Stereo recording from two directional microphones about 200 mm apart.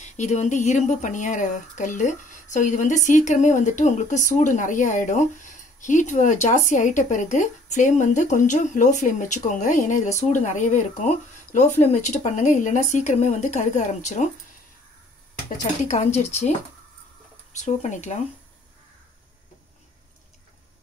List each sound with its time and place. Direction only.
0.0 s speech: 35° left (ahead or behind)
15.9 s speech: 35° left (ahead or behind)